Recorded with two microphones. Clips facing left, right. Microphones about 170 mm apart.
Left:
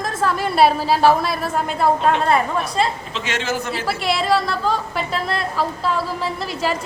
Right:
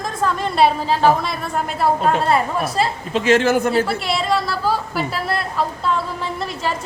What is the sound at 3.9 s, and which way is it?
A woman's voice, centre (ahead or behind).